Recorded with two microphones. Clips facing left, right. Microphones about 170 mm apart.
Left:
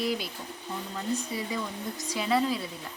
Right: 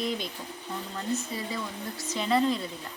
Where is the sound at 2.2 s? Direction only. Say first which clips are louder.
Right 1 dB; 5° left (ahead or behind).